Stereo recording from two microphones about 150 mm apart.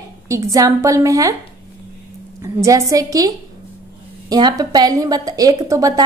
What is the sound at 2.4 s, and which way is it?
A woman's voice, 20° right (ahead or behind).